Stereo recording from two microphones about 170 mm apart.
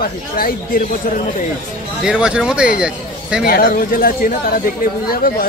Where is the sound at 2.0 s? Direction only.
5° right (ahead or behind).